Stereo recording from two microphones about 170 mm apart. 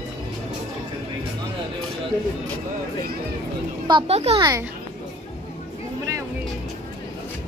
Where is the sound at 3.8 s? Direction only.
30° right (ahead or behind).